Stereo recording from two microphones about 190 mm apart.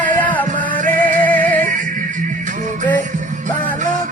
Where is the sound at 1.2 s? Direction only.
10° left (ahead or behind).